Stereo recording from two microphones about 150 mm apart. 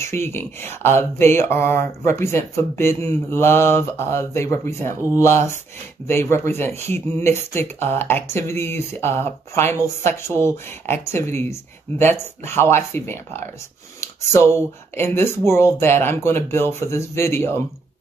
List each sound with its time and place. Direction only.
0.0 s speech: 20° left (ahead or behind)